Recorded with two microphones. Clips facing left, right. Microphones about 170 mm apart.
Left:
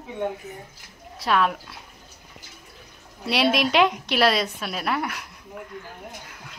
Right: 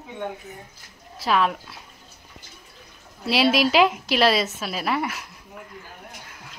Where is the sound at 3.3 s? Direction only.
Centre (ahead or behind).